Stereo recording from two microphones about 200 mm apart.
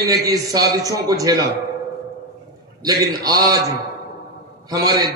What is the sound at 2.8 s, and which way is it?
Speech, 20° right (ahead or behind).